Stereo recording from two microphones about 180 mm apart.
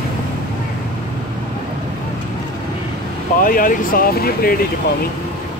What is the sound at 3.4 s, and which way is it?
Speech, 50° left (ahead or behind).